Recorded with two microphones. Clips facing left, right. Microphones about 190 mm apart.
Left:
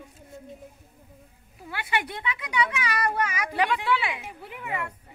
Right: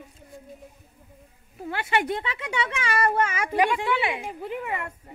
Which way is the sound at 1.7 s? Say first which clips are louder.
Right 5 dB; 45° right (ahead or behind).